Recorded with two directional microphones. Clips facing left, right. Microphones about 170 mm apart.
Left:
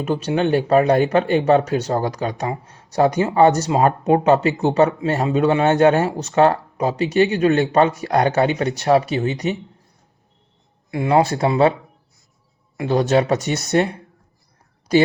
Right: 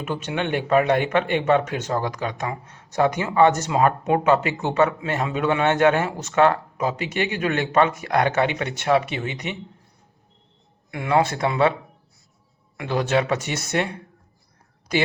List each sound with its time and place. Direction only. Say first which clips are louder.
0.0 s speech: left 7 dB; 35° left (ahead or behind)
10.9 s speech: left 4 dB; 30° left (ahead or behind)
12.7 s speech: left 5 dB; 30° left (ahead or behind)